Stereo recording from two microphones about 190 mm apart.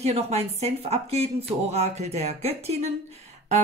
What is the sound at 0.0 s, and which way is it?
Speech, 35° right (ahead or behind).